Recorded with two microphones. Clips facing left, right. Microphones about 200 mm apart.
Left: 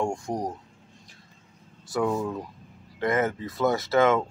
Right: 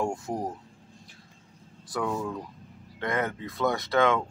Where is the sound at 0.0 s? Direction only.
5° right (ahead or behind).